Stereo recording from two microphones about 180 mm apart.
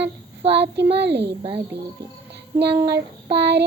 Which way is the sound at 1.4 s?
30° right (ahead or behind).